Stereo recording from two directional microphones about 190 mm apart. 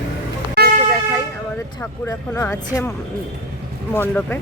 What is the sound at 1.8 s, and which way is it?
Speech, 15° left (ahead or behind).